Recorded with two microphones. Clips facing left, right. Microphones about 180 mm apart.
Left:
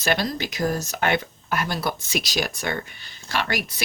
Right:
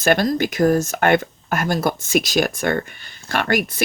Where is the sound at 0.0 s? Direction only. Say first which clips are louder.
Right 7 dB; 50° right (ahead or behind).